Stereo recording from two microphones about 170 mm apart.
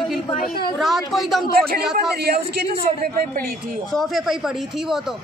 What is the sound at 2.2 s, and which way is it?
Speech, 70° right (ahead or behind).